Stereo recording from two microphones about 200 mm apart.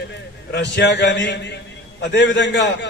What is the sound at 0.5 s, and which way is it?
A man's voice, 60° left (ahead or behind).